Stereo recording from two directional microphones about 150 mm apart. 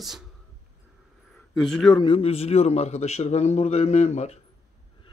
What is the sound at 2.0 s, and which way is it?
A man's voice, 40° left (ahead or behind).